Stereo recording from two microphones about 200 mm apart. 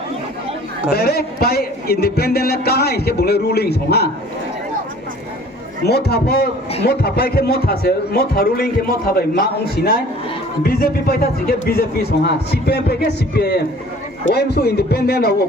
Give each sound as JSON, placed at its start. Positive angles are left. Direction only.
{"t": 0.9, "sound": "speech", "side_deg": 50}
{"t": 5.8, "sound": "speech", "side_deg": 50}